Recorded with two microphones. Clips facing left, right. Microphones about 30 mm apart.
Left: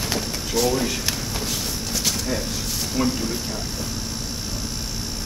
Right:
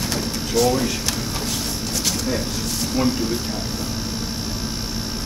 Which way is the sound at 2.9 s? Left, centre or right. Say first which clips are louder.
Right 2 dB; centre.